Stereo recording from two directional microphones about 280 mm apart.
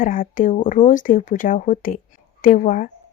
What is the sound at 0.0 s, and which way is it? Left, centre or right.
Speech, left.